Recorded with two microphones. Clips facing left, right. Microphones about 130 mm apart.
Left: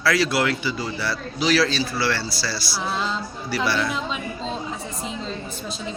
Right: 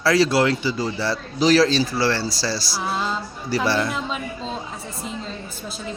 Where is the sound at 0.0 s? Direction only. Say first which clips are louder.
Right 3 dB; 35° right (ahead or behind).